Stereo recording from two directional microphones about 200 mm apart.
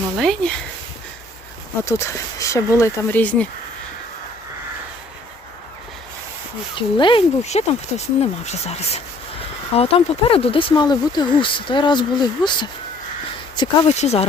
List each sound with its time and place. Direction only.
0.2 s speech: 5° left (ahead or behind)
1.8 s speech: 15° left (ahead or behind)
6.7 s speech: 25° left (ahead or behind)
13.6 s speech: 35° left (ahead or behind)